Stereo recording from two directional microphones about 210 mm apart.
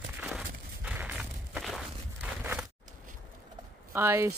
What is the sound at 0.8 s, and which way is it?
Walk, 5° right (ahead or behind).